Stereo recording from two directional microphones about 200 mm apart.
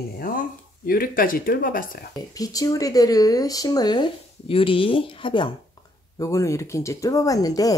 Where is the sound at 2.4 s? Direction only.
15° left (ahead or behind).